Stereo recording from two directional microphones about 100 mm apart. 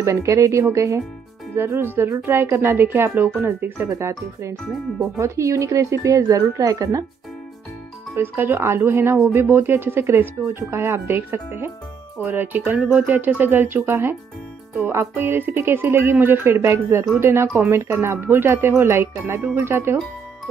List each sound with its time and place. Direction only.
0.0 s a woman's voice: 30° right (ahead or behind)
8.2 s speech: 25° right (ahead or behind)